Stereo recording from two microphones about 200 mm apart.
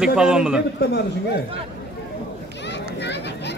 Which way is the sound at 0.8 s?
55° left (ahead or behind).